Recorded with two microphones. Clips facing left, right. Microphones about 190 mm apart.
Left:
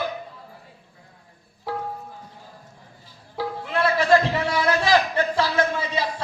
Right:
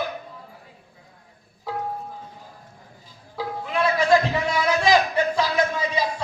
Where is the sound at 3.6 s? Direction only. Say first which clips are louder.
Even; 15° right (ahead or behind).